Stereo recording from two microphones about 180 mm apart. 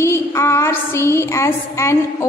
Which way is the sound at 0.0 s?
15° left (ahead or behind).